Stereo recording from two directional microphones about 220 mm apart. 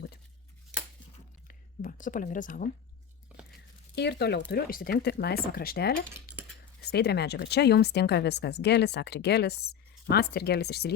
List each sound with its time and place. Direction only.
1.5 s speech: 40° left (ahead or behind)
3.9 s speech: 50° left (ahead or behind)